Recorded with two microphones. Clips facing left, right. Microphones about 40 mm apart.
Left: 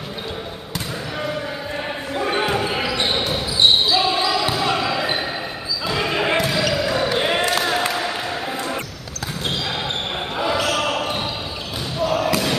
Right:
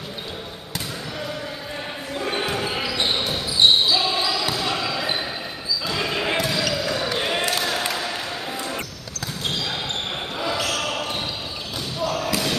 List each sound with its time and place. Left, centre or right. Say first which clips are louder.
2.1 s basketball bounce: left 4 dB; centre
10.5 s basketball bounce: left 5 dB; centre